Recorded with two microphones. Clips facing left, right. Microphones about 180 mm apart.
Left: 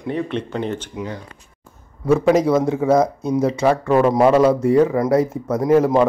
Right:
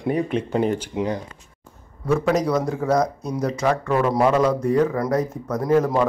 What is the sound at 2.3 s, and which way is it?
Speech, 25° left (ahead or behind).